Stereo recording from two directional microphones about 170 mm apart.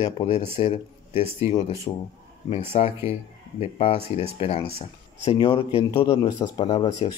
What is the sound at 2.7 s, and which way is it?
Speech, 40° left (ahead or behind).